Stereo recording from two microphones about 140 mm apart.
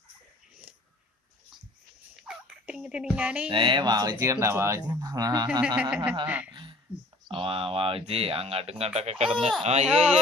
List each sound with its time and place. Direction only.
2.1 s turkey: 5° right (ahead or behind)
3.5 s speech: 35° right (ahead or behind)
5.6 s speech: 10° right (ahead or behind)
6.5 s a sound: 35° right (ahead or behind)
7.3 s speech: 40° right (ahead or behind)
9.8 s speech: 5° right (ahead or behind)